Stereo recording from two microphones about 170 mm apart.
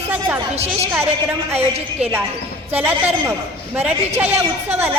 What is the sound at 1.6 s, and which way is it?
Speech, 40° right (ahead or behind).